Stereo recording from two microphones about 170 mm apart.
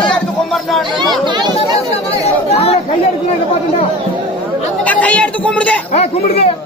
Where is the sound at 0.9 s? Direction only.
25° right (ahead or behind).